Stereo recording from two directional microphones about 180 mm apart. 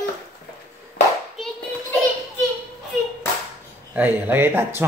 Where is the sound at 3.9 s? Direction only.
10° right (ahead or behind).